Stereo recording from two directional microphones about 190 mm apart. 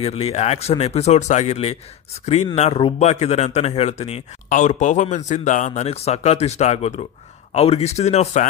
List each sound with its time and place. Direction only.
0.0 s speech: 35° left (ahead or behind)